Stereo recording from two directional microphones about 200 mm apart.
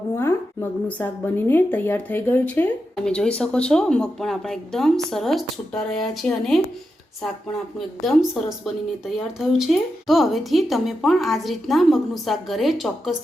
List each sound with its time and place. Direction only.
0.2 s a woman's voice: 10° left (ahead or behind)
7.8 s a woman's voice: centre (ahead or behind)